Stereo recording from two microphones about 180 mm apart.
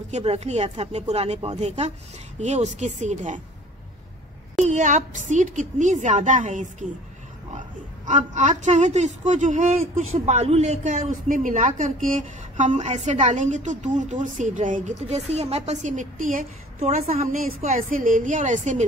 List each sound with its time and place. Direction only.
0.1 s speech: 35° right (ahead or behind)
4.6 s a woman's voice: 40° right (ahead or behind)
8.1 s a woman's voice: 40° right (ahead or behind)